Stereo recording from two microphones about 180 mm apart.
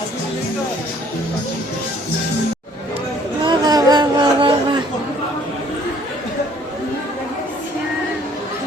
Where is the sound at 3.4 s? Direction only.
20° right (ahead or behind).